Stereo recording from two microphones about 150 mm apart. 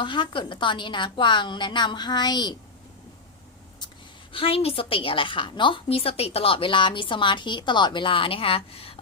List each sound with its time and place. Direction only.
0.0 s a woman's voice: 35° left (ahead or behind)
4.3 s a woman's voice: 35° left (ahead or behind)